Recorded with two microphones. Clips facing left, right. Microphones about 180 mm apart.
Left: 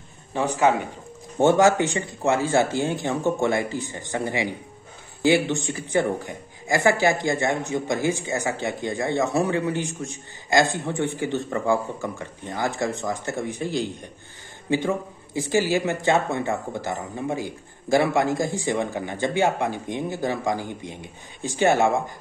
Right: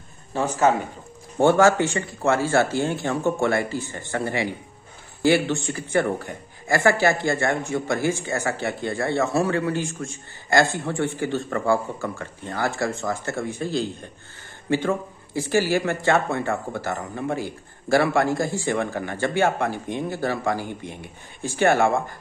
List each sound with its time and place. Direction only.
0.3 s a man's voice: 15° left (ahead or behind)